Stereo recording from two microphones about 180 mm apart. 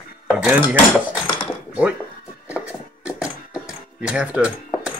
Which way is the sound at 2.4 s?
5° right (ahead or behind).